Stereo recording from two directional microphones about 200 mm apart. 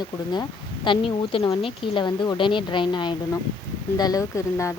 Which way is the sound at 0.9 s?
25° left (ahead or behind).